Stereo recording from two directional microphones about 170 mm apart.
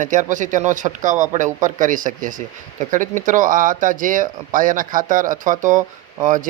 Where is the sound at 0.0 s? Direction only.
45° right (ahead or behind).